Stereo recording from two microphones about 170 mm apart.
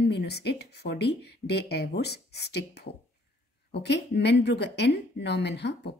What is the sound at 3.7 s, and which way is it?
Speech, 85° left.